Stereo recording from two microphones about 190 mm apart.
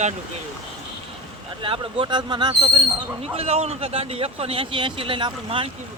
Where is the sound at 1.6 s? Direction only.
25° right (ahead or behind).